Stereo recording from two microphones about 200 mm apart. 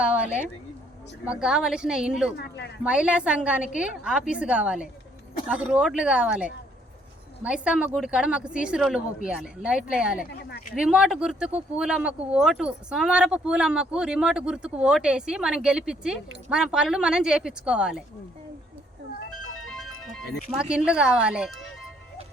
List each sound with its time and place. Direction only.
1.2 s speech: 5° right (ahead or behind)
2.3 s speech: 60° left (ahead or behind)
2.8 s speech: 5° right (ahead or behind)
19.7 s speech: centre (ahead or behind)